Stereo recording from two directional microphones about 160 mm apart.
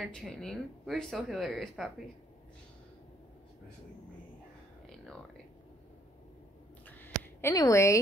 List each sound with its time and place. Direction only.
0.0 s speech: centre (ahead or behind)
4.8 s a sound: 5° left (ahead or behind)
7.4 s speech: 20° left (ahead or behind)